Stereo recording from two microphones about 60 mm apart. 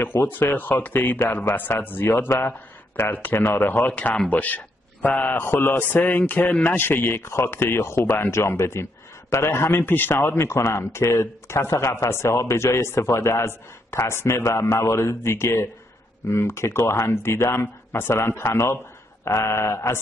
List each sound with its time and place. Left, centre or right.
0.3 s a man's voice: left